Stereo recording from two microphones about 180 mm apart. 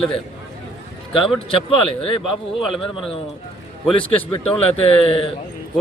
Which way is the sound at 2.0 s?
30° left (ahead or behind).